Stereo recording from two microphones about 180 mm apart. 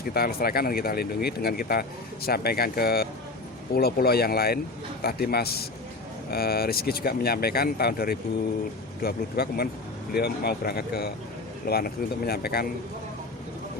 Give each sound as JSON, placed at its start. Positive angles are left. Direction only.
{"t": 0.0, "sound": "speech", "side_deg": 55}